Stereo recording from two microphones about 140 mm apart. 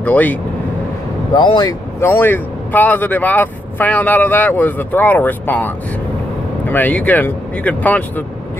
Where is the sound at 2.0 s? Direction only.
15° left (ahead or behind).